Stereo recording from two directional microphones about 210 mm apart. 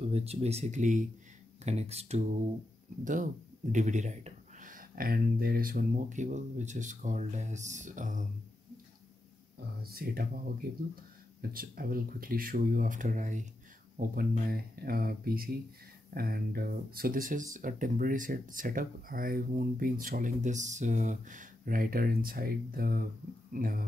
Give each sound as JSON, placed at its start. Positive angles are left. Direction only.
{"t": 0.0, "sound": "speech", "side_deg": -30}
{"t": 9.8, "sound": "speech", "side_deg": -45}
{"t": 11.5, "sound": "speech", "side_deg": -45}